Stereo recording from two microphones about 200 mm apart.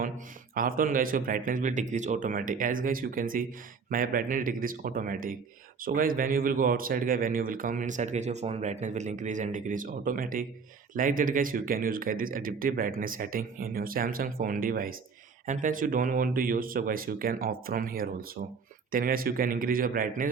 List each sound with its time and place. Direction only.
0.5 s a man's voice: 45° right (ahead or behind)